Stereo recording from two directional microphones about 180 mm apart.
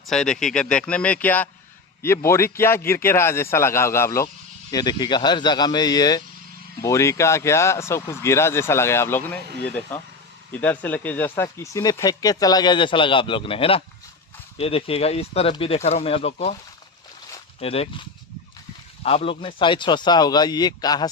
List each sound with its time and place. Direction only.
0.1 s speech: 5° left (ahead or behind); by 16.6 s 35° left (ahead or behind)
17.6 s speech: 35° left (ahead or behind)
19.0 s speech: 30° left (ahead or behind)